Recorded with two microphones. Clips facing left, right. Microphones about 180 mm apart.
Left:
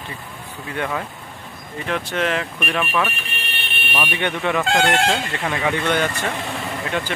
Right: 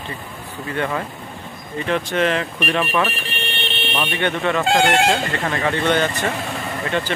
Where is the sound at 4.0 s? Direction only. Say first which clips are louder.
Right 1 dB; 10° left (ahead or behind).